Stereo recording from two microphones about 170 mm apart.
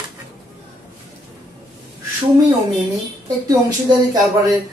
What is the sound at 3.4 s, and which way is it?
Speech, 25° right (ahead or behind).